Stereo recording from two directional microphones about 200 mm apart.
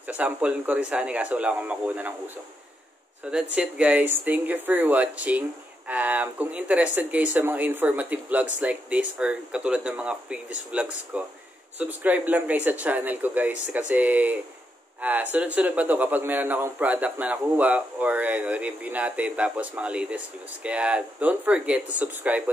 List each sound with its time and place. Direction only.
0.1 s speech: 5° right (ahead or behind)
3.5 s speech: 5° right (ahead or behind)